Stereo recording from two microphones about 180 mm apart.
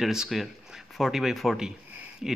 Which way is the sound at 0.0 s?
Centre (ahead or behind).